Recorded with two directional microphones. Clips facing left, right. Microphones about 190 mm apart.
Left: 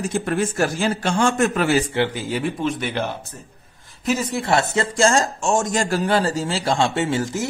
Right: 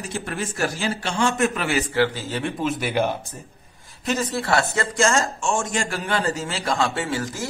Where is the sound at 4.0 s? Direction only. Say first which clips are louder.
Left 2 dB; 10° left (ahead or behind).